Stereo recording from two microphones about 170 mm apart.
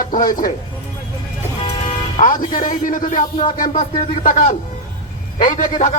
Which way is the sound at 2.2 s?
55° left (ahead or behind).